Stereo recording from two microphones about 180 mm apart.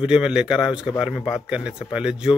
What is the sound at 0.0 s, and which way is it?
Speech, 5° right (ahead or behind).